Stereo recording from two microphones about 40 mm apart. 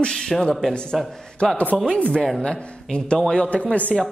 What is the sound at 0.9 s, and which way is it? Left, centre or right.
Speech, centre.